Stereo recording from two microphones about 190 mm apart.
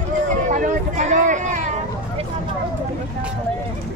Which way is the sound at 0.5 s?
40° right (ahead or behind).